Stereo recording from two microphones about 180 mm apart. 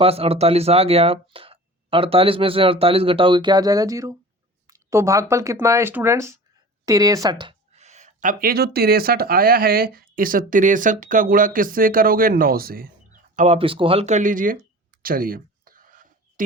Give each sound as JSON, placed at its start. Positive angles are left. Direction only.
{"t": 0.0, "sound": "speech", "side_deg": -35}
{"t": 13.3, "sound": "speech", "side_deg": -40}
{"t": 15.0, "sound": "a sound", "side_deg": -55}